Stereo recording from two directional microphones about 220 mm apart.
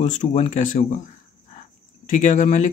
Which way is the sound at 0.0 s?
30° left (ahead or behind).